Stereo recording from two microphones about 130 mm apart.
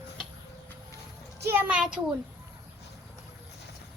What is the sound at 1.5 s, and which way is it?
Speech, 10° right (ahead or behind).